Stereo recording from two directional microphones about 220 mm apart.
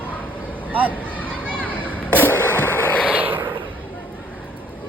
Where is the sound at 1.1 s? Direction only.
5° left (ahead or behind).